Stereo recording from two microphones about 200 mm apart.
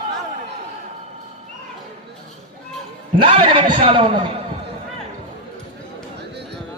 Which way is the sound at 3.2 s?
25° right (ahead or behind).